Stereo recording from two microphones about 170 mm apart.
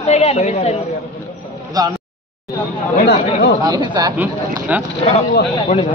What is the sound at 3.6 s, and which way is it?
Speech, 25° right (ahead or behind).